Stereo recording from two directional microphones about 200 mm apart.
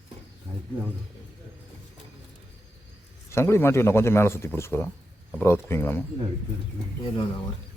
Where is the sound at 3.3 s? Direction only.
15° left (ahead or behind).